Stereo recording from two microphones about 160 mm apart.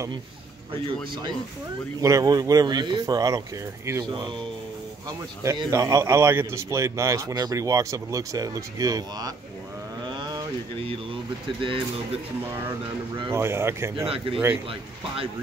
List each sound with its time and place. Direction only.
0.8 s a man's voice: 30° right (ahead or behind)
5.4 s a man's voice: 20° right (ahead or behind)
10.0 s a sound: 25° right (ahead or behind)
11.4 s speech: 35° right (ahead or behind)
13.3 s speech: 15° right (ahead or behind)
14.0 s speech: 35° right (ahead or behind)